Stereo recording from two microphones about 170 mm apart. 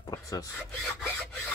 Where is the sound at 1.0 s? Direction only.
5° left (ahead or behind).